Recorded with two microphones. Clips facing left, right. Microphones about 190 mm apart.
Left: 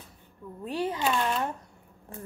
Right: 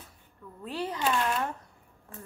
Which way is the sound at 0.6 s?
25° left (ahead or behind).